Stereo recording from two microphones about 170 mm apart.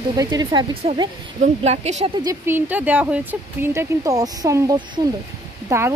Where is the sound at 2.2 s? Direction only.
15° right (ahead or behind).